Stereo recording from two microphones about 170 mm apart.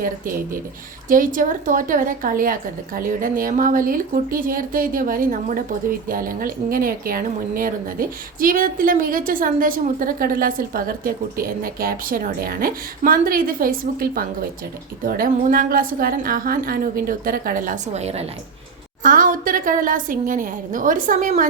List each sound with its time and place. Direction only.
0.0 s a woman's voice: 55° right (ahead or behind); by 18.3 s 40° right (ahead or behind)
19.0 s a woman's voice: 50° right (ahead or behind)